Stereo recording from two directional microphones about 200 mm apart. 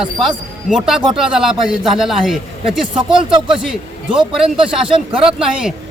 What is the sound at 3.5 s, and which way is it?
Speech, 5° right (ahead or behind).